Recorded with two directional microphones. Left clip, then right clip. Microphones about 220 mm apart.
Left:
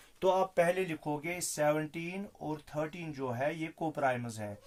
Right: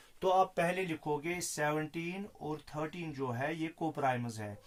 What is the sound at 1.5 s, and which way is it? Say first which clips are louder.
Speech: left 5 dB; 30° left (ahead or behind).